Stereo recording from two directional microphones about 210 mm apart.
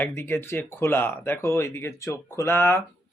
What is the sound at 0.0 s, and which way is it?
Speech, 10° left (ahead or behind).